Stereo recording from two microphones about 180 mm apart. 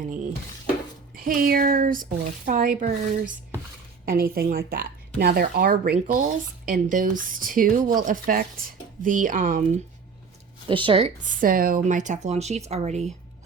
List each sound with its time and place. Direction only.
1.1 s speech: 50° right (ahead or behind)
10.7 s speech: 30° right (ahead or behind)
11.3 s speech: 50° right (ahead or behind)